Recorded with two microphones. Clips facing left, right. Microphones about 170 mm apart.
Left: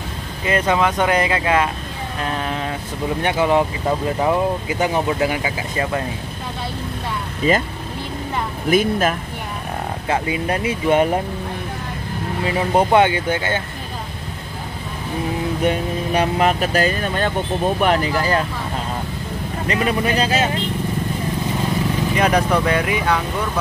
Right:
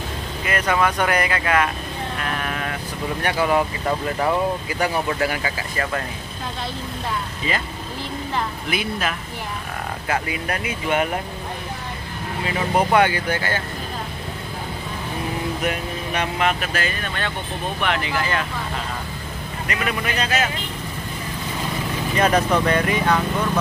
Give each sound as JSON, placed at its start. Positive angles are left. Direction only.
{"t": 0.5, "sound": "speech", "side_deg": 25}
{"t": 7.4, "sound": "speech", "side_deg": 45}
{"t": 8.6, "sound": "speech", "side_deg": 45}
{"t": 10.0, "sound": "speech", "side_deg": 25}
{"t": 12.5, "sound": "speech", "side_deg": 25}
{"t": 15.6, "sound": "speech", "side_deg": 30}
{"t": 19.7, "sound": "speech", "side_deg": 30}
{"t": 22.1, "sound": "speech", "side_deg": 10}